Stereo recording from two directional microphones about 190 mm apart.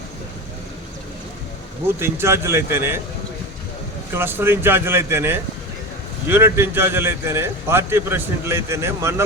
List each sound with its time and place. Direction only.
2.0 s a man's voice: 15° right (ahead or behind)
4.1 s a man's voice: 10° right (ahead or behind)